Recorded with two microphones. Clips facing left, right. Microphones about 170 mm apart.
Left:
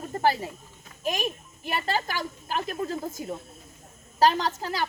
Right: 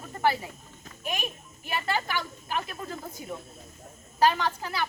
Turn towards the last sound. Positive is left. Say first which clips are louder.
# left 2 dB
turn(degrees=40)  # may be behind; listen again after turning